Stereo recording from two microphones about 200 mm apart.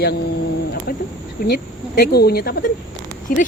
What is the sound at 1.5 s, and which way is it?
Speech, 50° left (ahead or behind).